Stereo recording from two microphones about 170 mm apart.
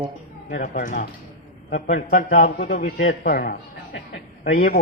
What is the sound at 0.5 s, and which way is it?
A man's voice, 50° left (ahead or behind).